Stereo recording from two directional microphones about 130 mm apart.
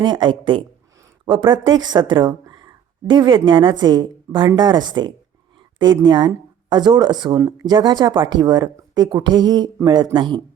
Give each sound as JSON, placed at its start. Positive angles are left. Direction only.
{"t": 0.0, "sound": "speech", "side_deg": -35}